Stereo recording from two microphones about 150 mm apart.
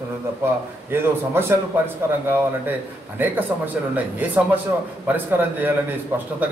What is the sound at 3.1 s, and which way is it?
A man's voice, 10° right (ahead or behind).